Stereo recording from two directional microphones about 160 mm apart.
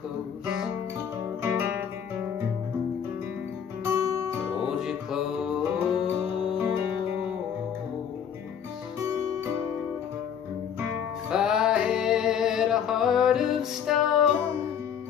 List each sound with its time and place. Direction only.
1.4 s guitar: 15° right (ahead or behind)
3.8 s guitar: 20° right (ahead or behind)
4.7 s music: 5° right (ahead or behind)
11.2 s music: 5° right (ahead or behind)